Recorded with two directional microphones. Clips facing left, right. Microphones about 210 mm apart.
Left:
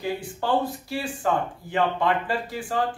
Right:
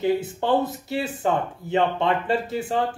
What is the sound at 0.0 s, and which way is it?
Speech, 20° right (ahead or behind).